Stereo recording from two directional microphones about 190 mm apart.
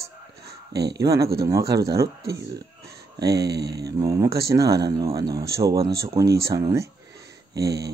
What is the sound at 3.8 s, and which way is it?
Speech, 20° right (ahead or behind).